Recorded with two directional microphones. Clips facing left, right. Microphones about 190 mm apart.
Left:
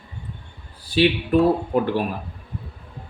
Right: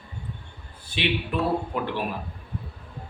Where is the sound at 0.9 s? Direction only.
45° left (ahead or behind).